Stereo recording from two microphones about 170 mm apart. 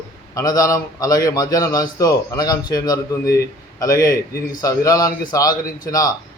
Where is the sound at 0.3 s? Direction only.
20° left (ahead or behind).